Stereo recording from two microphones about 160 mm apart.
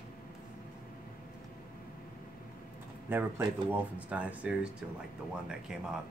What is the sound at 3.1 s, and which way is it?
Speech, 10° right (ahead or behind).